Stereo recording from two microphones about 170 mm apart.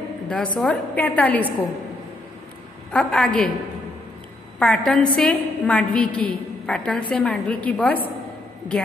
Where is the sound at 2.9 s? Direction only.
Centre (ahead or behind).